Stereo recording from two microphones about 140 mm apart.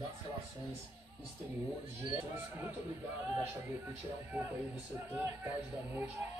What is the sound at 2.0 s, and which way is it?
Speech, 15° right (ahead or behind).